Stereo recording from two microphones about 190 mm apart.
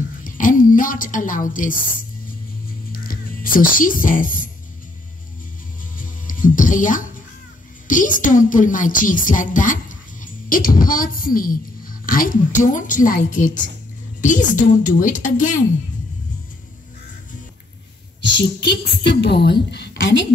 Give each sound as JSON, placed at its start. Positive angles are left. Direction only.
{"t": 0.2, "sound": "a woman's voice", "side_deg": 45}
{"t": 2.9, "sound": "music", "side_deg": 50}
{"t": 5.9, "sound": "music", "side_deg": 45}
{"t": 7.8, "sound": "a woman's voice", "side_deg": 45}
{"t": 18.2, "sound": "a woman's voice", "side_deg": 65}